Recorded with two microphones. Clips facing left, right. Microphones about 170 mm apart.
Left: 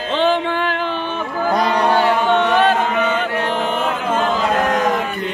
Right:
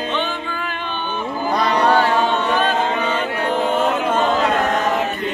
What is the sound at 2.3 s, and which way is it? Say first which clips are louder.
Chant: left 4 dB; 75° left (ahead or behind).